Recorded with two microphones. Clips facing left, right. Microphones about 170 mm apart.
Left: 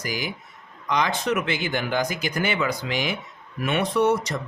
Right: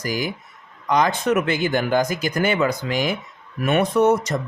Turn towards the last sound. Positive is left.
turn(degrees=-45)  # may be behind; listen again after turning